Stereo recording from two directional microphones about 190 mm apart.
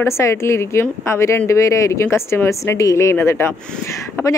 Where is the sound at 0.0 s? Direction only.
15° left (ahead or behind).